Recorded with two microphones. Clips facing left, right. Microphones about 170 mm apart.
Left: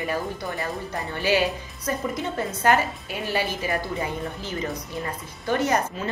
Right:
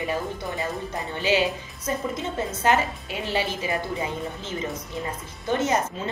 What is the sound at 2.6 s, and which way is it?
A woman's voice, 20° right (ahead or behind).